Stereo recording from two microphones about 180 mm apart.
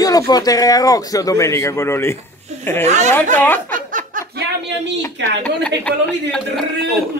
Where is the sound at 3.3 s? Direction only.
10° left (ahead or behind).